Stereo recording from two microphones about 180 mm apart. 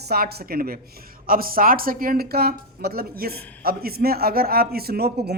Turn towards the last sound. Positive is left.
turn(degrees=-65)  # may be behind; listen again after turning